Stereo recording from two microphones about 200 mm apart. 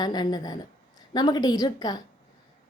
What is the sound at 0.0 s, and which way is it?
A woman's voice, 20° left (ahead or behind).